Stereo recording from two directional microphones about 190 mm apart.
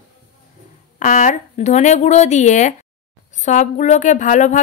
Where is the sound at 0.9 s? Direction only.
45° left (ahead or behind).